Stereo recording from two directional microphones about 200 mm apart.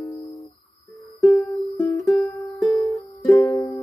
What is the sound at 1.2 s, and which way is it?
Music, centre (ahead or behind).